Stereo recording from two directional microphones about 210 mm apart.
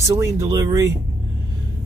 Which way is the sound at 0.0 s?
15° right (ahead or behind).